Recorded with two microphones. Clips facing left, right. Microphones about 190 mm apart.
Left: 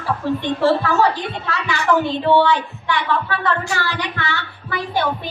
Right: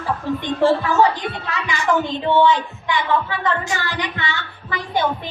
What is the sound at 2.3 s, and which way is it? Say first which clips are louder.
Speech: right 3 dB; 65° left (ahead or behind).